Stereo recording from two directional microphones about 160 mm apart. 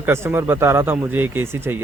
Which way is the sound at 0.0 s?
15° right (ahead or behind).